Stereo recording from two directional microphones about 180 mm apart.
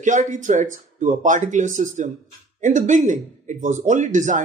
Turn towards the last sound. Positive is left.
turn(degrees=-45)  # may be behind; listen again after turning